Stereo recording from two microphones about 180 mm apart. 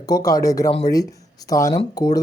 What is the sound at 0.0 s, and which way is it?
Speech, 20° left (ahead or behind).